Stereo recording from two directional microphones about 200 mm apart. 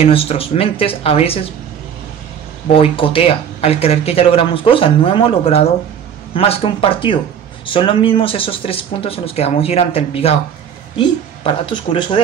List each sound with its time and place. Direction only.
0.0 s speech: 30° left (ahead or behind)
2.7 s speech: 25° left (ahead or behind)